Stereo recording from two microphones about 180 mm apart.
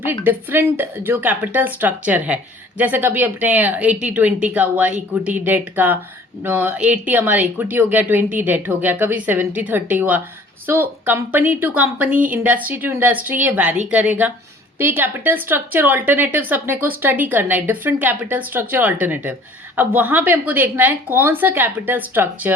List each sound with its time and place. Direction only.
0.0 s a woman's voice: 10° right (ahead or behind)